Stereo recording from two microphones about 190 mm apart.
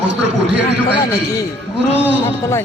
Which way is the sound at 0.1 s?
65° right (ahead or behind).